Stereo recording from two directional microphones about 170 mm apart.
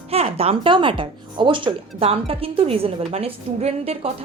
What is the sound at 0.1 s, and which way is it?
Speech, 35° right (ahead or behind).